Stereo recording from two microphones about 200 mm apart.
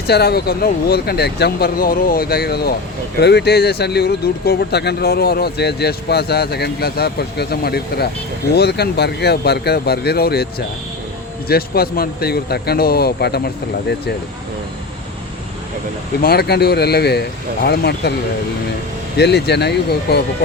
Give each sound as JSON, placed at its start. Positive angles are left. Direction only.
{"t": 0.1, "sound": "speech", "side_deg": 55}
{"t": 16.2, "sound": "speech", "side_deg": 50}
{"t": 19.1, "sound": "speech", "side_deg": 55}